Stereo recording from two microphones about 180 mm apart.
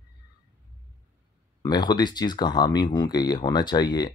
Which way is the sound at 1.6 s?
25° left (ahead or behind).